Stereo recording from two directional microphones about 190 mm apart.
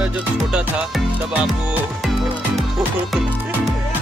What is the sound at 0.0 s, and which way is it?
Music, 5° right (ahead or behind).